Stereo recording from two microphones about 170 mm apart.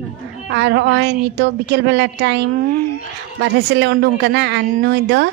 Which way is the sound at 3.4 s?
90° right.